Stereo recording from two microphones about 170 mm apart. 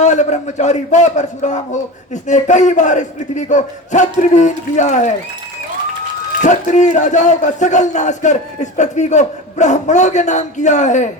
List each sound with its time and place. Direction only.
0.0 s a man's voice: 45° left (ahead or behind)
6.4 s a man's voice: 45° left (ahead or behind)